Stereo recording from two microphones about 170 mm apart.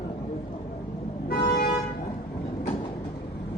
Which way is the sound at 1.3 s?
60° left (ahead or behind).